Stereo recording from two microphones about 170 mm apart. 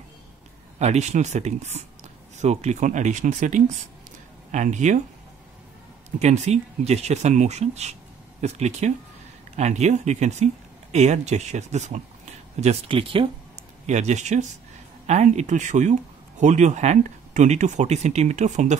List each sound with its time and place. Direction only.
0.7 s speech: 40° right (ahead or behind)
6.1 s speech: 40° right (ahead or behind)
13.8 s speech: 40° right (ahead or behind)